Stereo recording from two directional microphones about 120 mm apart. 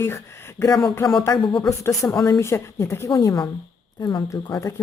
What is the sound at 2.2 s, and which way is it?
A woman's voice, 25° left (ahead or behind).